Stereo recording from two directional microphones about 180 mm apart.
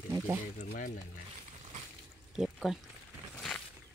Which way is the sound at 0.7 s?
45° left (ahead or behind).